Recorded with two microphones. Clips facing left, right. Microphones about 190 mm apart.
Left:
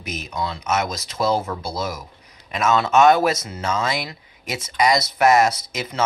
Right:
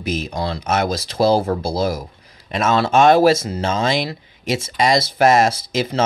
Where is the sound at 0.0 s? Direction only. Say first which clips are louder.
Right 5 dB; 30° right (ahead or behind).